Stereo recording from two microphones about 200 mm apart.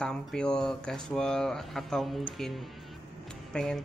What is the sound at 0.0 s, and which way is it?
Speech, 5° left (ahead or behind).